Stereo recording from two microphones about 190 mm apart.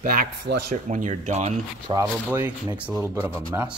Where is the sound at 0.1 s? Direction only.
55° right (ahead or behind).